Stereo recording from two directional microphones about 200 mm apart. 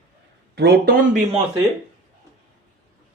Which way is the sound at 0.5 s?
55° right (ahead or behind).